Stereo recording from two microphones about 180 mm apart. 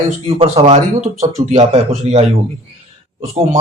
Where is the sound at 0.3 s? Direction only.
35° right (ahead or behind).